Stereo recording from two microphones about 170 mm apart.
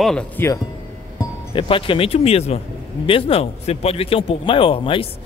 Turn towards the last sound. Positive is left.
turn(degrees=30)  # may be behind; listen again after turning